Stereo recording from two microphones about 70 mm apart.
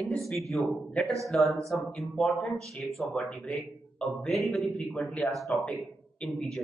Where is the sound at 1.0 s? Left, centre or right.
Centre.